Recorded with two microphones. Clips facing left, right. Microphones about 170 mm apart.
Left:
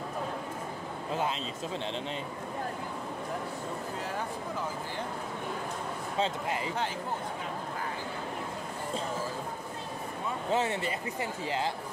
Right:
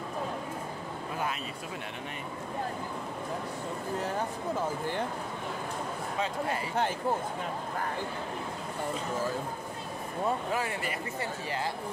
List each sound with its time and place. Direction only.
6.1 s speech: 25° left (ahead or behind)
10.5 s speech: 25° left (ahead or behind)